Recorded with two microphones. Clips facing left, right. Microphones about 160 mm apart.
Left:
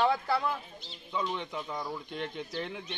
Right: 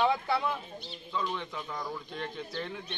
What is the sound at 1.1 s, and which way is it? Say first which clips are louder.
Speech: left 1 dB; 15° left (ahead or behind).